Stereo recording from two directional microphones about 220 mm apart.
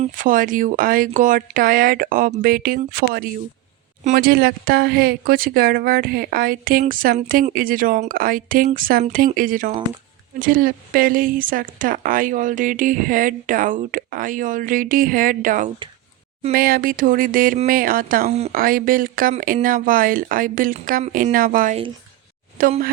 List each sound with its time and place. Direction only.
0.0 s speech: 35° right (ahead or behind)
18.5 s speech: 40° right (ahead or behind)